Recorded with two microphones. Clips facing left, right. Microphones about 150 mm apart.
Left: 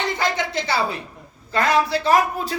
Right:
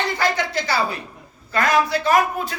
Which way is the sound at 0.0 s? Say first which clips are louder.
Right 1 dB; 20° left (ahead or behind).